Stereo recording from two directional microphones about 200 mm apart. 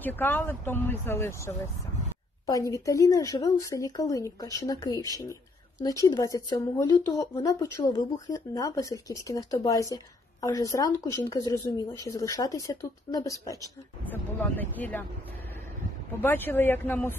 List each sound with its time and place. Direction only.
0.0 s speech: 10° left (ahead or behind)
16.2 s speech: 10° left (ahead or behind)